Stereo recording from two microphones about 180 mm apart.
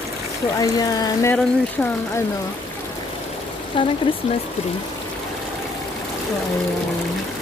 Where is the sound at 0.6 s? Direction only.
20° left (ahead or behind).